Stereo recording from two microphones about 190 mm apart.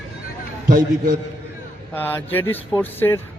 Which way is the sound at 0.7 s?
50° right (ahead or behind).